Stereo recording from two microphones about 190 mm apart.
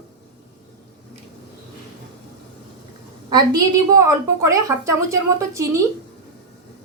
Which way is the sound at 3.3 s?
20° right (ahead or behind).